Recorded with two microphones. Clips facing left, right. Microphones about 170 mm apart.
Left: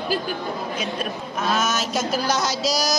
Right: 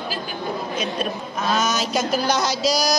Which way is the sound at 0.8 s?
5° left (ahead or behind).